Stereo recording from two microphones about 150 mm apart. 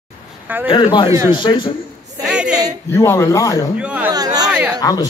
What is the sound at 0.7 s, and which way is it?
A man's voice, 35° left (ahead or behind).